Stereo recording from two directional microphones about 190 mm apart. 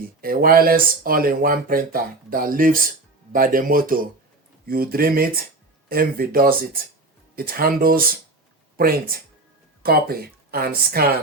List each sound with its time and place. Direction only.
0.2 s speech: 50° right (ahead or behind)